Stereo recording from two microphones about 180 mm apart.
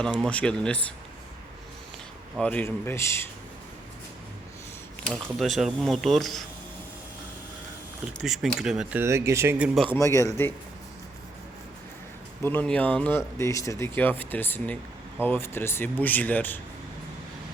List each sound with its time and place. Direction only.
0.0 s speech: 5° left (ahead or behind)
2.4 s speech: 10° left (ahead or behind)
5.0 s speech: centre (ahead or behind)
8.2 s speech: centre (ahead or behind)
9.9 s speech: 15° left (ahead or behind)
12.4 s speech: 10° left (ahead or behind)